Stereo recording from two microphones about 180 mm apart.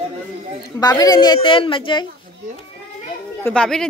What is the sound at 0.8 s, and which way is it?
Speech, 20° left (ahead or behind).